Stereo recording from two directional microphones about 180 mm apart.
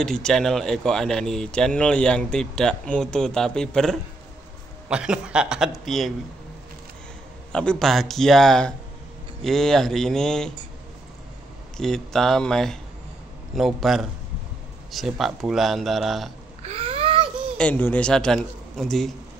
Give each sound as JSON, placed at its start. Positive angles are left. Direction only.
{"t": 0.0, "sound": "a man's voice", "side_deg": 5}
{"t": 7.5, "sound": "a man's voice", "side_deg": 5}
{"t": 11.7, "sound": "a man's voice", "side_deg": 5}
{"t": 16.6, "sound": "a sound", "side_deg": -35}
{"t": 17.6, "sound": "a man's voice", "side_deg": 10}